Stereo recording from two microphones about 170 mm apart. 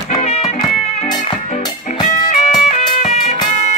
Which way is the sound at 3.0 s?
40° left (ahead or behind).